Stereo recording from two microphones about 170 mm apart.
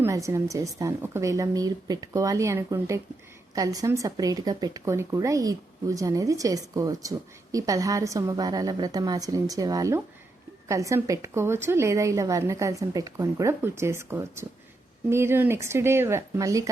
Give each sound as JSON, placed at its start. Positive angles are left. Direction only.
{"t": 0.0, "sound": "a woman's voice", "side_deg": -20}